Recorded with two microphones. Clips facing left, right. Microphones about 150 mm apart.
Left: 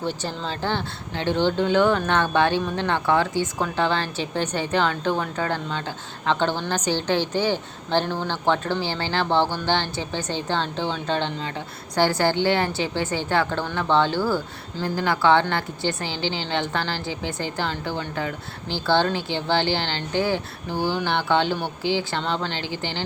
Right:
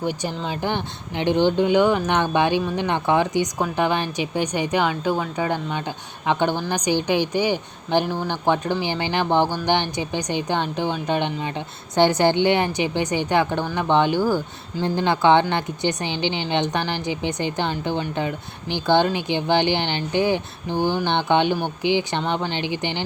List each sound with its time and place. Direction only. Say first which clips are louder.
0.0 s speech: right 2 dB; 15° right (ahead or behind)